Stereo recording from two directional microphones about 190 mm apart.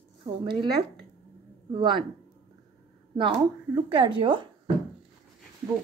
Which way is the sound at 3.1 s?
25° right (ahead or behind).